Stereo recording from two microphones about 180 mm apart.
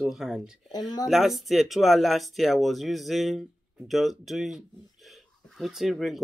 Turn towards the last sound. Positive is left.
turn(degrees=0)  # may be behind; listen again after turning